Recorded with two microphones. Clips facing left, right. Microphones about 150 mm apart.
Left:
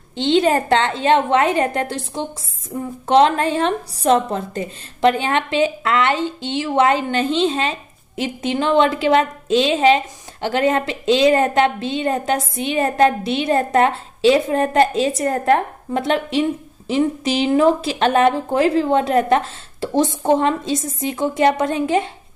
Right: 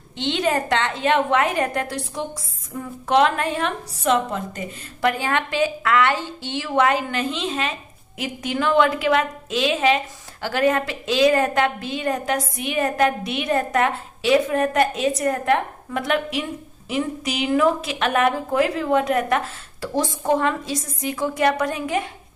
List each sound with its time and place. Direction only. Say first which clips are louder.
0.1 s a woman's voice: left 6 dB; 30° left (ahead or behind)